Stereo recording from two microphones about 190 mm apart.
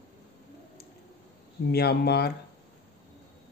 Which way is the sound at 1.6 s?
55° left (ahead or behind).